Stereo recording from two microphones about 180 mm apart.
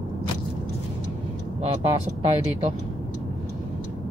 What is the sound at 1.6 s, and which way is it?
Speech, 35° right (ahead or behind).